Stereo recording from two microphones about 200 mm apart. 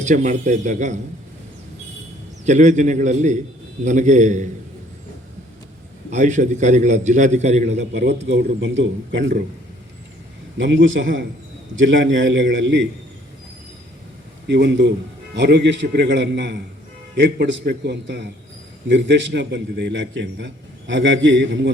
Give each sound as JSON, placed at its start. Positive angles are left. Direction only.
{"t": 0.0, "sound": "a man's voice", "side_deg": -40}
{"t": 2.5, "sound": "a man's voice", "side_deg": -35}
{"t": 6.1, "sound": "a man's voice", "side_deg": -40}
{"t": 7.8, "sound": "a man's voice", "side_deg": -60}
{"t": 10.6, "sound": "a man's voice", "side_deg": -65}
{"t": 14.4, "sound": "a man's voice", "side_deg": -60}